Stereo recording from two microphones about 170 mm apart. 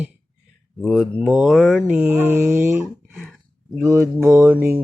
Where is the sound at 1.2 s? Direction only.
Centre (ahead or behind).